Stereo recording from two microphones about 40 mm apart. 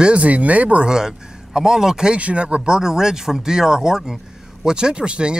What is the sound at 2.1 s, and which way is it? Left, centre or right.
Speech, right.